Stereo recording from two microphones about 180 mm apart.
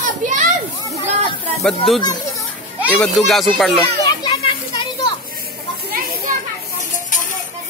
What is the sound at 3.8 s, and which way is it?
Children playing, 20° left (ahead or behind).